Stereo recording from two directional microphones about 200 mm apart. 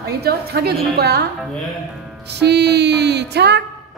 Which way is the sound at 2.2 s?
55° right (ahead or behind).